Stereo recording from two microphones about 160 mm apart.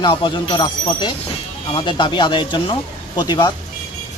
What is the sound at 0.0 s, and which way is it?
Speech, 30° left (ahead or behind).